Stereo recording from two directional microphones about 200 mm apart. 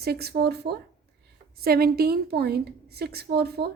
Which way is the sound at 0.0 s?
50° right (ahead or behind).